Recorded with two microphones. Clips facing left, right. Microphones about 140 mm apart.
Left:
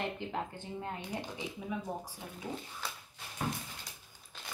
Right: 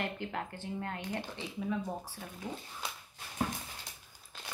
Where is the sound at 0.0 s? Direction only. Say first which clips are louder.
Even; 15° left (ahead or behind).